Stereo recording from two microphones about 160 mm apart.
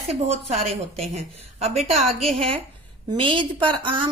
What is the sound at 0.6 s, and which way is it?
A woman's voice, 40° right (ahead or behind).